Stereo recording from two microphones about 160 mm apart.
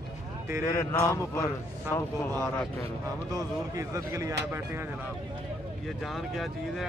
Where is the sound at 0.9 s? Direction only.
15° left (ahead or behind).